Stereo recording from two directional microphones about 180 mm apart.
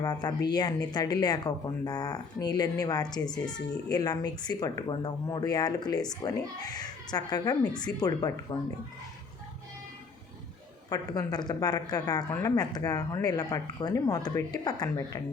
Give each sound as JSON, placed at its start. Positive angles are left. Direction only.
{"t": 0.0, "sound": "a woman's voice", "side_deg": 20}
{"t": 7.7, "sound": "speech", "side_deg": 5}
{"t": 7.9, "sound": "a woman's voice", "side_deg": 20}
{"t": 10.8, "sound": "a woman's voice", "side_deg": 20}